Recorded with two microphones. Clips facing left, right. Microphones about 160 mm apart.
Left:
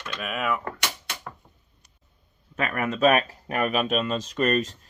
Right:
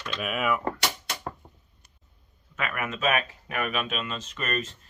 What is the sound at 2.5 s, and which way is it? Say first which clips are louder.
Speech: left 5 dB; 35° left (ahead or behind).